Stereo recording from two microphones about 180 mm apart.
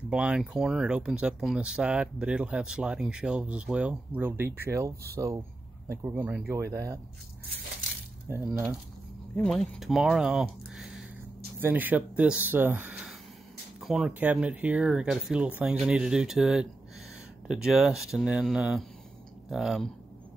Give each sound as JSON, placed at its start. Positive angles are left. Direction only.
{"t": 0.1, "sound": "speech", "side_deg": -5}
{"t": 8.3, "sound": "speech", "side_deg": -15}
{"t": 9.4, "sound": "speech", "side_deg": 5}